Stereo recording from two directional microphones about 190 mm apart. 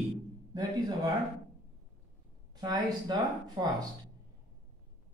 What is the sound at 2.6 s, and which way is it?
Speech, 20° right (ahead or behind).